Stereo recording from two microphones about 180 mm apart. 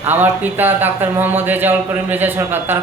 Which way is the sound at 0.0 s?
10° right (ahead or behind).